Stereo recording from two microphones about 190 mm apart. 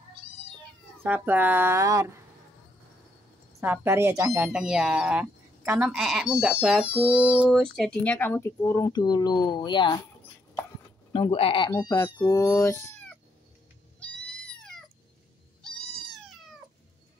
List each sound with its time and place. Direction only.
1.0 s speech: 10° right (ahead or behind)
3.6 s speech: 15° right (ahead or behind)
4.5 s speech: 5° right (ahead or behind); by 10.0 s 25° left (ahead or behind)
11.1 s speech: 30° left (ahead or behind)
13.9 s cat: 5° left (ahead or behind)